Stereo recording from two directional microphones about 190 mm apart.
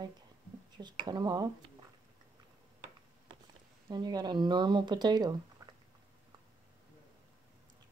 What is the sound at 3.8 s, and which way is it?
Speech, 20° right (ahead or behind).